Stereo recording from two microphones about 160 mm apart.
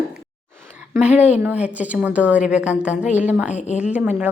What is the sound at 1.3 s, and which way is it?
A woman's voice, 10° right (ahead or behind).